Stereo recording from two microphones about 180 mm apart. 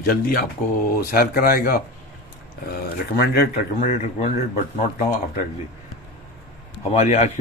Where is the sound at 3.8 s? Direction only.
35° left (ahead or behind).